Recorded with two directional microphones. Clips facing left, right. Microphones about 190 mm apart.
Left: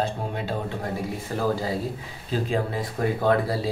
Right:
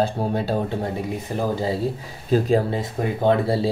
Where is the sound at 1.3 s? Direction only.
20° right (ahead or behind).